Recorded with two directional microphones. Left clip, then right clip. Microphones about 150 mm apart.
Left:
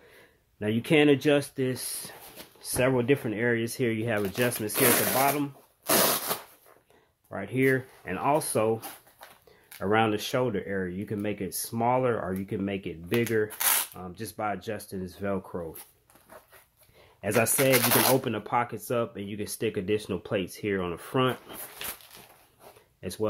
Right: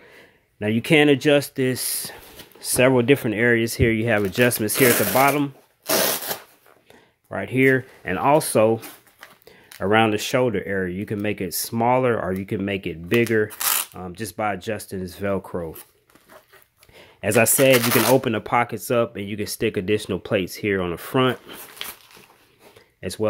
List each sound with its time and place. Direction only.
0.6 s speech: 40° right (ahead or behind)
1.6 s speech: 55° right (ahead or behind)
2.6 s speech: 65° right (ahead or behind)
5.9 s a sound: 20° right (ahead or behind)
7.2 s speech: 50° right (ahead or behind)
13.5 s shuffling cards: 20° right (ahead or behind)
13.9 s speech: 50° right (ahead or behind)
17.2 s speech: 50° right (ahead or behind)
17.6 s speech: 5° right (ahead or behind)
18.1 s speech: 50° right (ahead or behind)
22.9 s a sound: 45° right (ahead or behind)